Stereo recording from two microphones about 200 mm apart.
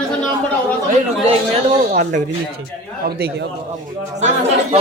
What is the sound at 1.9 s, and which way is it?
Speech, 45° right (ahead or behind).